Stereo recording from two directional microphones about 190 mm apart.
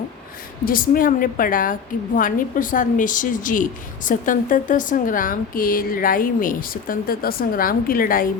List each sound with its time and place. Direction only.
0.6 s a woman's voice: 50° left (ahead or behind)